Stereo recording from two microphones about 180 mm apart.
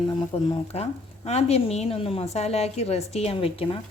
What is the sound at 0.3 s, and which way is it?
Speech, 30° left (ahead or behind).